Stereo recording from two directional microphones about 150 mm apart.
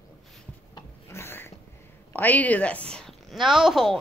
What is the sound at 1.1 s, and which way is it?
Cat, 15° left (ahead or behind).